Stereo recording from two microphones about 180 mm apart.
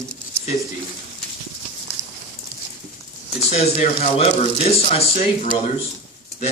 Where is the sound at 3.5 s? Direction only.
40° left (ahead or behind).